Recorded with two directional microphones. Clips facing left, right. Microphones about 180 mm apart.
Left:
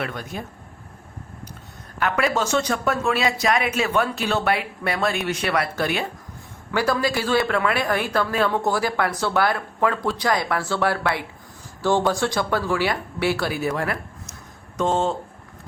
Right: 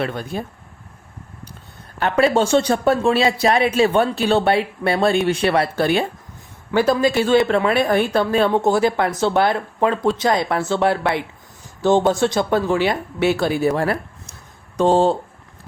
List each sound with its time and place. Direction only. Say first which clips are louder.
0.0 s a woman's voice: right 5 dB; 30° right (ahead or behind)
2.0 s a woman's voice: right 6 dB; 30° right (ahead or behind)